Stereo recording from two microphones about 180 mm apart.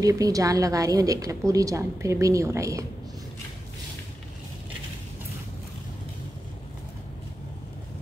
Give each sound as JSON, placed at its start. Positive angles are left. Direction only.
{"t": 0.0, "sound": "a woman's voice", "side_deg": -20}